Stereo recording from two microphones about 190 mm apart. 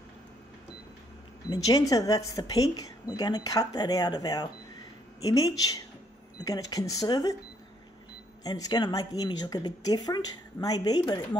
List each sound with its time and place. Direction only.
1.5 s speech: 20° left (ahead or behind)
8.5 s speech: 20° left (ahead or behind)